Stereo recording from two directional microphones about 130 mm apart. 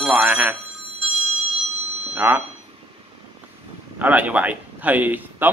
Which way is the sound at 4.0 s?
10° right (ahead or behind).